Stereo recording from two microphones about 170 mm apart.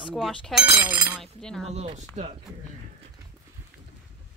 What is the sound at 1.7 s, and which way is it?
Speech, 40° right (ahead or behind).